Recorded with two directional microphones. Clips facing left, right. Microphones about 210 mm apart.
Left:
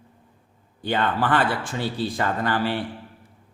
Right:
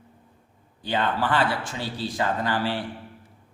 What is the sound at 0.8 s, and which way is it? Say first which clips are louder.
Speech: left 2 dB; 55° left (ahead or behind).